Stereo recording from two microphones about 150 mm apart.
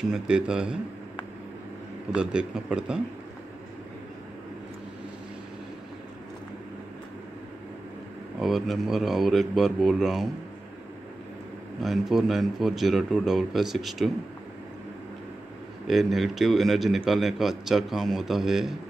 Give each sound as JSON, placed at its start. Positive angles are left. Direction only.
{"t": 0.1, "sound": "a man's voice", "side_deg": -5}
{"t": 2.1, "sound": "a man's voice", "side_deg": -5}
{"t": 8.4, "sound": "a man's voice", "side_deg": 0}
{"t": 11.8, "sound": "a man's voice", "side_deg": 0}
{"t": 15.9, "sound": "a man's voice", "side_deg": 0}